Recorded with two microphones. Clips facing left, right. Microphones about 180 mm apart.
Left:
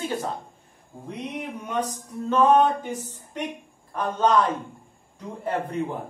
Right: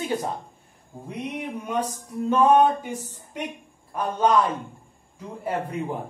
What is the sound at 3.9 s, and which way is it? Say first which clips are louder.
Speech: even; 10° right (ahead or behind).